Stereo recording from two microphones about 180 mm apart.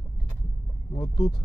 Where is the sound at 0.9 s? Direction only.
25° left (ahead or behind).